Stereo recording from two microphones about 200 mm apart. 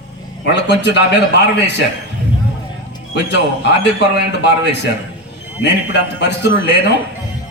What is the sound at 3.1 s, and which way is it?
A man's voice, 60° left (ahead or behind).